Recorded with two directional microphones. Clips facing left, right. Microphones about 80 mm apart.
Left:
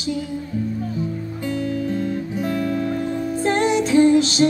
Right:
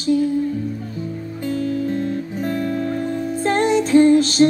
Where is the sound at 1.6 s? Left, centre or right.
Right.